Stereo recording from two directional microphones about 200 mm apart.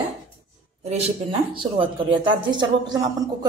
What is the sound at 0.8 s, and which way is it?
Speech, 30° right (ahead or behind).